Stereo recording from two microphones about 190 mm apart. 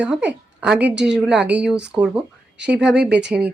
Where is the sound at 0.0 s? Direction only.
5° right (ahead or behind).